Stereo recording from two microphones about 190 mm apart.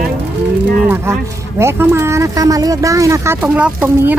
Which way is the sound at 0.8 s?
15° right (ahead or behind).